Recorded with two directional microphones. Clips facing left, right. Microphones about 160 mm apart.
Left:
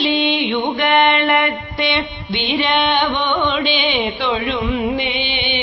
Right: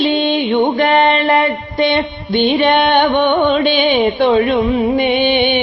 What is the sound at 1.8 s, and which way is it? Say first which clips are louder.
Music: right 6 dB; 50° right (ahead or behind).